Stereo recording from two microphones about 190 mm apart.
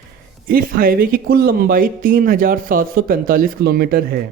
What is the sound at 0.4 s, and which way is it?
Speech, 50° right (ahead or behind).